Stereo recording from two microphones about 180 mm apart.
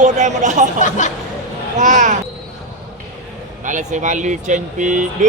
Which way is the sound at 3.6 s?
45° right (ahead or behind).